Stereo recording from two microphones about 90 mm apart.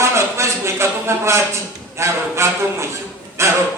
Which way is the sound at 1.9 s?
30° right (ahead or behind).